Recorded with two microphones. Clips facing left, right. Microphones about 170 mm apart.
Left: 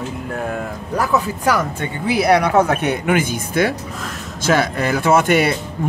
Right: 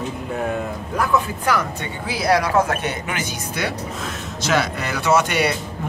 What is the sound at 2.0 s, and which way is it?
Speech, 60° left (ahead or behind).